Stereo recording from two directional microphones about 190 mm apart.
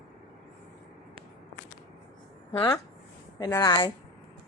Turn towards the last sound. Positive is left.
turn(degrees=20)  # may be behind; listen again after turning